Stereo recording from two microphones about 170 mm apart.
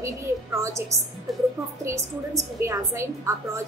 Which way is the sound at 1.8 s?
15° right (ahead or behind).